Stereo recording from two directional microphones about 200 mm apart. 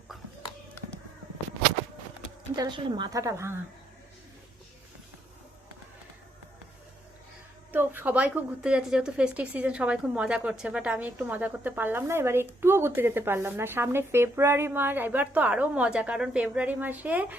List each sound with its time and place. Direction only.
2.6 s a woman's voice: 20° right (ahead or behind)
7.7 s a woman's voice: 10° right (ahead or behind)